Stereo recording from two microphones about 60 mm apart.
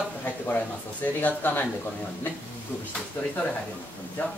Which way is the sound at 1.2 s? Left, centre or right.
Left.